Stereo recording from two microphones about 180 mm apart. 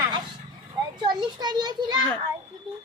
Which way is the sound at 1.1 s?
25° right (ahead or behind).